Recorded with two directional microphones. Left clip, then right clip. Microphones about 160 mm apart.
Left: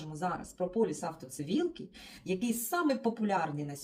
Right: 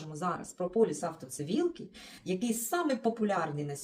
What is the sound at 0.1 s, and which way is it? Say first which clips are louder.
Speech: right 1 dB; 20° right (ahead or behind).